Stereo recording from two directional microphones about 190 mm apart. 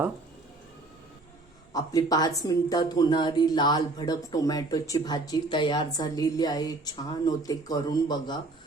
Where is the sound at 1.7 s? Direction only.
20° left (ahead or behind).